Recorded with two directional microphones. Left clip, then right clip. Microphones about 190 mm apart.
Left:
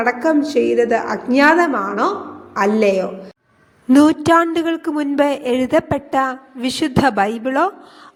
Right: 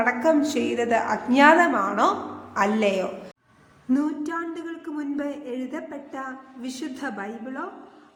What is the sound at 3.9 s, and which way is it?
A woman's voice, 50° left (ahead or behind).